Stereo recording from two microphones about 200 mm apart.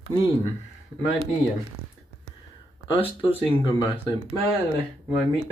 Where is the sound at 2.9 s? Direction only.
25° left (ahead or behind).